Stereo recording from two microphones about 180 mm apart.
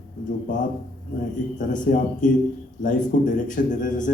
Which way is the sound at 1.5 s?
45° left (ahead or behind).